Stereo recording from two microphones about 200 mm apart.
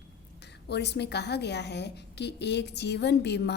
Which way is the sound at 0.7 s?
55° left (ahead or behind).